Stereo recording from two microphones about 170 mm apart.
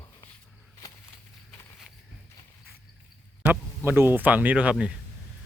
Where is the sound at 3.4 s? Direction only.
10° right (ahead or behind).